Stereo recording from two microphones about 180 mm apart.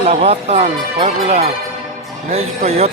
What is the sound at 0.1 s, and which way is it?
Speech, 35° right (ahead or behind).